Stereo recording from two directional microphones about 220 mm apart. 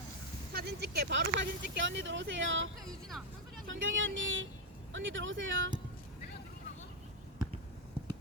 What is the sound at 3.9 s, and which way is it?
Speech, 60° right (ahead or behind).